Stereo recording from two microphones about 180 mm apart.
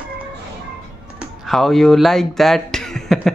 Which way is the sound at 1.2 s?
Centre (ahead or behind).